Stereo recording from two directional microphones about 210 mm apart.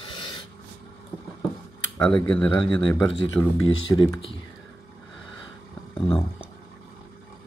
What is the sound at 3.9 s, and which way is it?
Speech, 20° left (ahead or behind).